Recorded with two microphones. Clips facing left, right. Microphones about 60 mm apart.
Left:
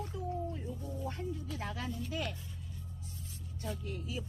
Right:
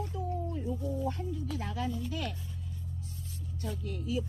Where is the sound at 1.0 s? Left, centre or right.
Left.